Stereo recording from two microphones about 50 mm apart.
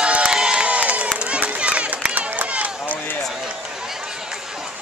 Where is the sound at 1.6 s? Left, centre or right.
Right.